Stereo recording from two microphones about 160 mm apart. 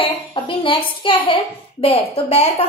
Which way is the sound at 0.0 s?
35° left (ahead or behind).